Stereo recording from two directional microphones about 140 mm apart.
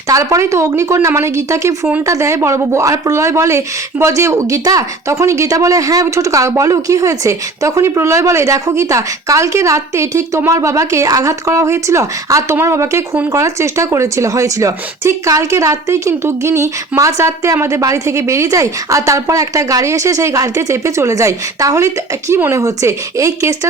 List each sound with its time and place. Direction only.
0.1 s speech: 20° right (ahead or behind)